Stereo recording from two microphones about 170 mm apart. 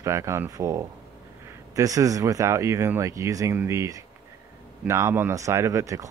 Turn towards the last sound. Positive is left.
turn(degrees=-20)  # may be behind; listen again after turning